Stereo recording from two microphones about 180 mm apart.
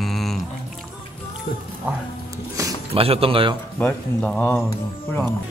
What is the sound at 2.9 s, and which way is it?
Speech, 30° right (ahead or behind).